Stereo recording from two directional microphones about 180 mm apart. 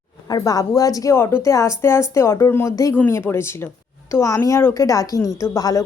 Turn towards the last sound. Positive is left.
turn(degrees=20)  # may be behind; listen again after turning